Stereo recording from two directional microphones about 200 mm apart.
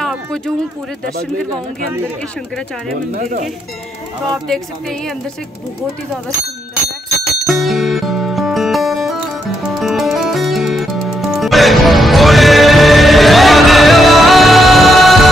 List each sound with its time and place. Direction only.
0.0 s a sound: centre (ahead or behind)
3.2 s speech: 35° right (ahead or behind)
4.5 s music: centre (ahead or behind)
7.4 s music: centre (ahead or behind)